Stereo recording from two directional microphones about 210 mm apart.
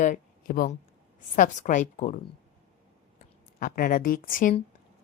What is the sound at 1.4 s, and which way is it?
Speech, 35° left (ahead or behind).